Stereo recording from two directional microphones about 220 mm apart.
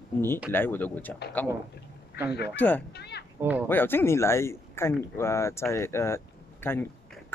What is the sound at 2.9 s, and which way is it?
Children playing, 50° left (ahead or behind).